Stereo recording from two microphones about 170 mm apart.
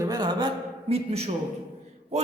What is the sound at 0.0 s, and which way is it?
A man's voice, 25° right (ahead or behind).